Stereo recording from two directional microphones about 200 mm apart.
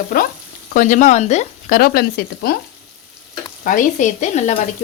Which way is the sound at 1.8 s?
50° left (ahead or behind).